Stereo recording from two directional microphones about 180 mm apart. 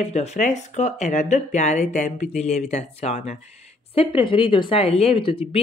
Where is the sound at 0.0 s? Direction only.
35° left (ahead or behind).